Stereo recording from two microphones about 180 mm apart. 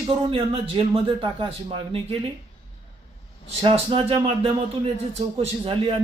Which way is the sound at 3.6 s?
30° right (ahead or behind).